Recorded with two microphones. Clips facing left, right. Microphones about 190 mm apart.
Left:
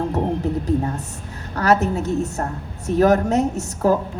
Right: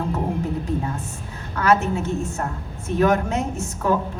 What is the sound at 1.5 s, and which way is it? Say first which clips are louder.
A woman's voice: left 1 dB; 40° left (ahead or behind).